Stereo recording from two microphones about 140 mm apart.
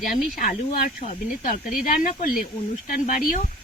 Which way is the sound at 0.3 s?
85° left.